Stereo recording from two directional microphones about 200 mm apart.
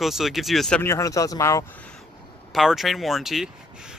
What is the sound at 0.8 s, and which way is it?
Speech, 15° left (ahead or behind).